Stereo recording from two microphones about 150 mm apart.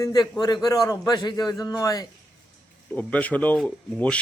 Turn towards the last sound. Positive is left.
turn(degrees=5)  # may be behind; listen again after turning